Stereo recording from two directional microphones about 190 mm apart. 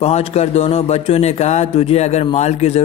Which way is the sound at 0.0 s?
35° left (ahead or behind).